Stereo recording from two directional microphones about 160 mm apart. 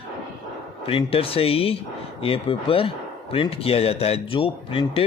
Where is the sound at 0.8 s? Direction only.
35° left (ahead or behind).